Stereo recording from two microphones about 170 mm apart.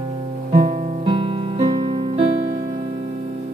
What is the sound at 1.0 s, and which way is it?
Music, 30° right (ahead or behind).